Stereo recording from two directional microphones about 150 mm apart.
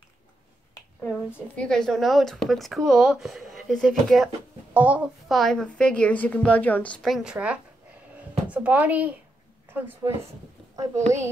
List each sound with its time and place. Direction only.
1.0 s a child's voice: 5° left (ahead or behind); by 11.2 s 20° right (ahead or behind)